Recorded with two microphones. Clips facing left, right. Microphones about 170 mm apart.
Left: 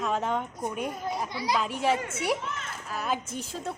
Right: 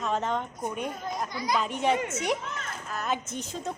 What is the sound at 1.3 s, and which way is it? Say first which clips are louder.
Speech: left 1 dB; 30° left (ahead or behind).